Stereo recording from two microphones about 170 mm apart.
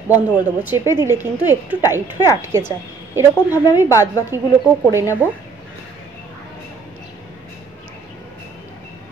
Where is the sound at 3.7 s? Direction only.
20° left (ahead or behind).